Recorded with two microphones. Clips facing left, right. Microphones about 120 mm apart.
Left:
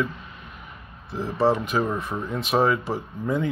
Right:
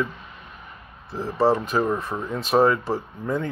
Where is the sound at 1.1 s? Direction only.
Centre (ahead or behind).